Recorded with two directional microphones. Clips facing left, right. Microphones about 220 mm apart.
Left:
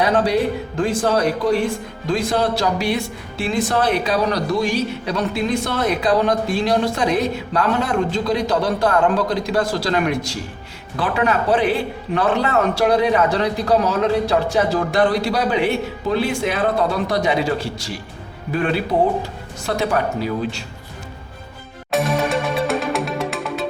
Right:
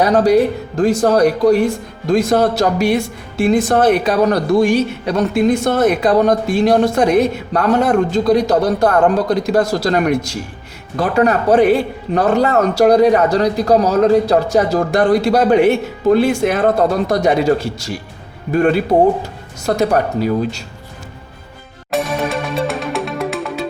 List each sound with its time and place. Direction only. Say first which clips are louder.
0.0 s speech: right 6 dB; 40° right (ahead or behind)
21.8 s music: even; centre (ahead or behind)